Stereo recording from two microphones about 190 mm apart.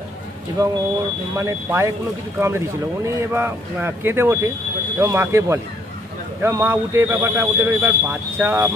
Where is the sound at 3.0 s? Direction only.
15° right (ahead or behind).